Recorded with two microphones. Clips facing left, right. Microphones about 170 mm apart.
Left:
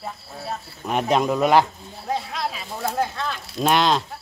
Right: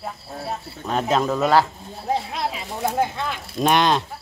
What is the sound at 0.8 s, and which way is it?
Speech, 10° left (ahead or behind).